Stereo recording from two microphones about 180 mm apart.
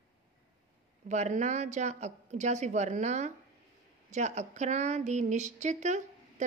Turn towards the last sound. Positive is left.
turn(degrees=-40)  # may be behind; listen again after turning